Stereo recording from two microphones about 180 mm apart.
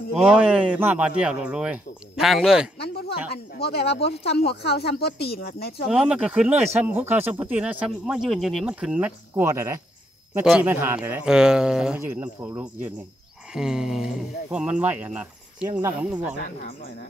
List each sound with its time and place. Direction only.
0.2 s speech: 5° right (ahead or behind)
2.8 s speech: 65° left (ahead or behind)
5.9 s speech: 5° right (ahead or behind)
10.4 s speech: 5° right (ahead or behind)